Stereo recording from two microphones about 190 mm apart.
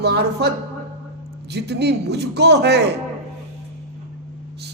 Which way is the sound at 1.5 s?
60° right (ahead or behind).